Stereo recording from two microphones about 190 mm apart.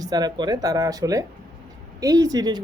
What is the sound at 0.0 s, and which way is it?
Speech, 20° right (ahead or behind).